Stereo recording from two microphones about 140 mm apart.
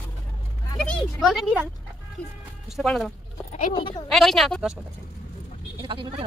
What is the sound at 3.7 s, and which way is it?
Speech, 35° left (ahead or behind).